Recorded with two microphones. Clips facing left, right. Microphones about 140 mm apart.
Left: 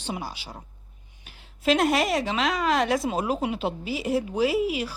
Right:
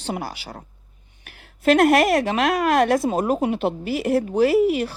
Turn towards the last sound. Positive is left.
turn(degrees=-55)  # may be behind; listen again after turning